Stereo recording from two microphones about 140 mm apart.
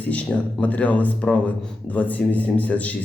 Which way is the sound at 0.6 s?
10° left (ahead or behind).